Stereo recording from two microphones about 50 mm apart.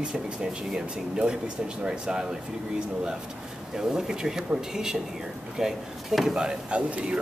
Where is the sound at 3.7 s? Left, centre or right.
Centre.